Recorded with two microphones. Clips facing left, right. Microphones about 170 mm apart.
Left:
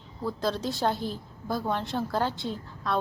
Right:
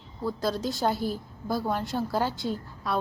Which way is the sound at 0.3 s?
Centre (ahead or behind).